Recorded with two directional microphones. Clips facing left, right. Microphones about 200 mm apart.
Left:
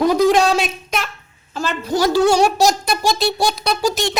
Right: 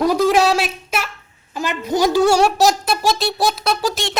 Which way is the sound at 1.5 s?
15° right (ahead or behind).